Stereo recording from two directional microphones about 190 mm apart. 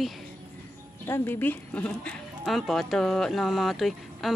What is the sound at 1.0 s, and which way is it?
Speech, 10° left (ahead or behind).